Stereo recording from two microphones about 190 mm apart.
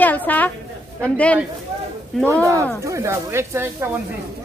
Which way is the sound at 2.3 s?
15° right (ahead or behind).